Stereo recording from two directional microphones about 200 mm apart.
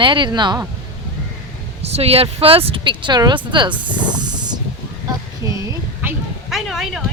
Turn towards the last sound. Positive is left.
turn(degrees=0)  # may be behind; listen again after turning